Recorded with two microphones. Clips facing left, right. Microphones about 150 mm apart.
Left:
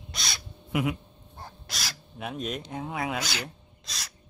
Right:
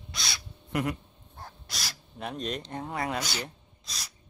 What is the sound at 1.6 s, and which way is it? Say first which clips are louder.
Crow: left 3 dB; 90° left.